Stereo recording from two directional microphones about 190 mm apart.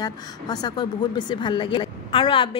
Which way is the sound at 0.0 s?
20° left (ahead or behind).